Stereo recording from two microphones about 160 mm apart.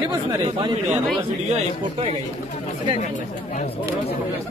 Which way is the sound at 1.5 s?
40° right (ahead or behind).